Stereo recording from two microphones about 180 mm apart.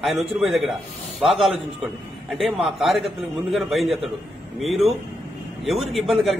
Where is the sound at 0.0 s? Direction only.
Centre (ahead or behind).